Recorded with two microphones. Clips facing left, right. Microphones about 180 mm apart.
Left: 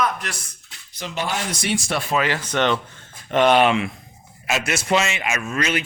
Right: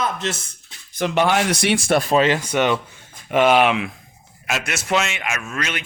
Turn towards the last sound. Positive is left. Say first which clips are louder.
# left 4 dB
turn(degrees=0)  # may be behind; listen again after turning